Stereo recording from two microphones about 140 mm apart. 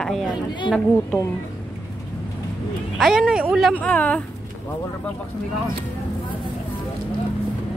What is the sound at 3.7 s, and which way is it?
Speech, 10° left (ahead or behind).